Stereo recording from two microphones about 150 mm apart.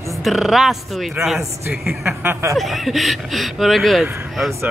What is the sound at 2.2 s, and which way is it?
Snicker, 15° right (ahead or behind).